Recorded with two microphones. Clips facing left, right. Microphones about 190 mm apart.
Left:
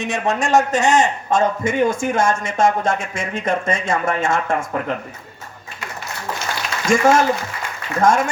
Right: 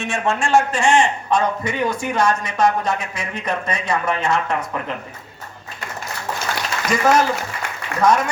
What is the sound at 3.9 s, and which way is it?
Speech, 45° left (ahead or behind).